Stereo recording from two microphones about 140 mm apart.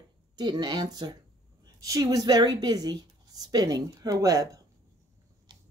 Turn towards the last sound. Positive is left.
turn(degrees=-25)  # may be behind; listen again after turning